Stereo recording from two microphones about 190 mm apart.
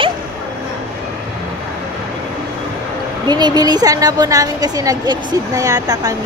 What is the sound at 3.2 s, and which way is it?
A woman's voice, 20° right (ahead or behind).